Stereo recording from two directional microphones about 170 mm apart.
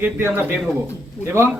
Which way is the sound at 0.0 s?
10° right (ahead or behind).